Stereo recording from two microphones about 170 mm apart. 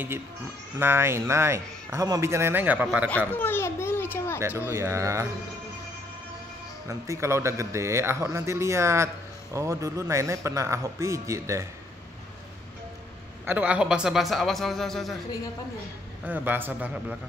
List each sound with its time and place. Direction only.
0.7 s a man's voice: 15° right (ahead or behind)
3.3 s a sound: 10° left (ahead or behind)
4.4 s a man's voice: 15° right (ahead or behind)
6.9 s a man's voice: 15° right (ahead or behind)
13.5 s a man's voice: 10° right (ahead or behind)
16.3 s a man's voice: 10° right (ahead or behind)